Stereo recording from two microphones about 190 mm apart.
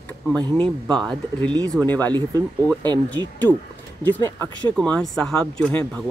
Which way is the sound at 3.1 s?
10° left (ahead or behind).